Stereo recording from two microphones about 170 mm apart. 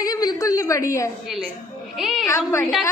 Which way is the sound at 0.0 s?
20° left (ahead or behind).